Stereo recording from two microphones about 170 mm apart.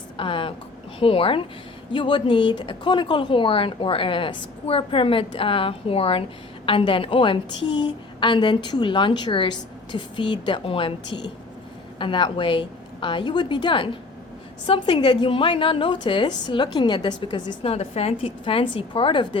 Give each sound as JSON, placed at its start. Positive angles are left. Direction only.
{"t": 0.2, "sound": "a woman's voice", "side_deg": 30}